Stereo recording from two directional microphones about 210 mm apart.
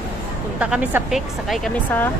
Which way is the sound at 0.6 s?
5° right (ahead or behind).